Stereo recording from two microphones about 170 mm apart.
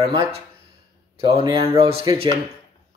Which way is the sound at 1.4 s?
30° right (ahead or behind).